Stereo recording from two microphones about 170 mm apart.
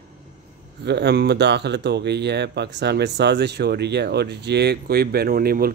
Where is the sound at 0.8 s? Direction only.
75° right (ahead or behind).